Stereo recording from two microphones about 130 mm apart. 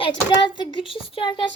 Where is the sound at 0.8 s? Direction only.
45° left (ahead or behind).